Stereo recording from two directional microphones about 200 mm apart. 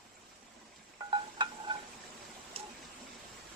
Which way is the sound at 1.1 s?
25° right (ahead or behind).